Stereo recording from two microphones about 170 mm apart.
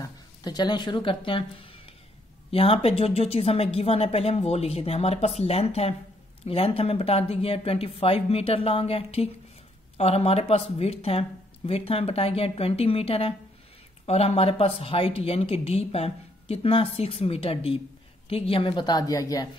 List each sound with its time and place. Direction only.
0.0 s a woman's voice: 25° left (ahead or behind)